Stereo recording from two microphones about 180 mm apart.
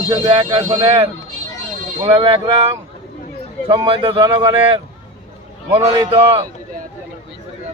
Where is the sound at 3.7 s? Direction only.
30° right (ahead or behind).